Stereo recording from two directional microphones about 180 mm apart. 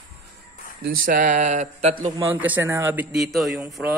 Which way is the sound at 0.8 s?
50° right (ahead or behind).